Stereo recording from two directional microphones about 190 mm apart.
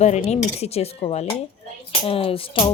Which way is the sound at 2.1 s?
30° left (ahead or behind).